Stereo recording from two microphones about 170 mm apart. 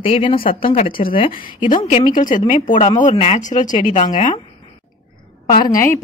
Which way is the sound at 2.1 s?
50° left (ahead or behind).